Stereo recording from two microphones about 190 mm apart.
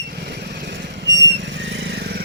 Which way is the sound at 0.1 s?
55° right (ahead or behind).